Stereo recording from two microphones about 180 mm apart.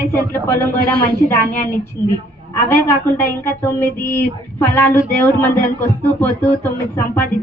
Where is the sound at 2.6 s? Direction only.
10° left (ahead or behind).